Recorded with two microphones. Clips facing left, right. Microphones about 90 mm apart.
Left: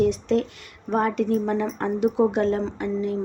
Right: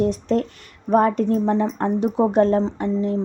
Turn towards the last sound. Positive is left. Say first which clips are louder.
# right 3 dB
turn(degrees=-35)  # may be behind; listen again after turning